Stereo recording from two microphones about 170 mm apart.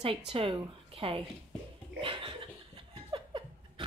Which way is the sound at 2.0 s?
30° right (ahead or behind).